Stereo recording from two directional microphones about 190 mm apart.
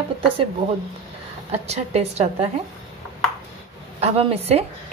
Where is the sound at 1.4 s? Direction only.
35° right (ahead or behind).